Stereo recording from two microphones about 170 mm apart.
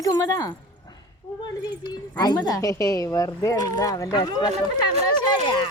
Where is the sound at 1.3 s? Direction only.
15° left (ahead or behind).